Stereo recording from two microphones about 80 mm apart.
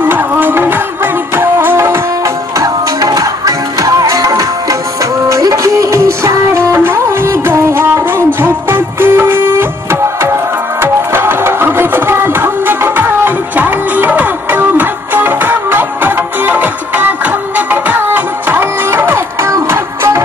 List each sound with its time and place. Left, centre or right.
0.0 s music: right
2.6 s music: right